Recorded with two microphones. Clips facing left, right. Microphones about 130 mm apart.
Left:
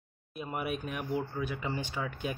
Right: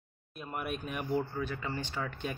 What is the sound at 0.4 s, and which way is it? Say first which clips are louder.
Speech: left 2 dB; 5° left (ahead or behind).